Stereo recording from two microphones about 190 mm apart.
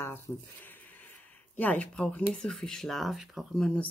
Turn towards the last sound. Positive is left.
turn(degrees=5)  # may be behind; listen again after turning